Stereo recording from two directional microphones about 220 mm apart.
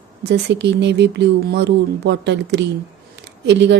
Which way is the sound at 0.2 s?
50° right (ahead or behind).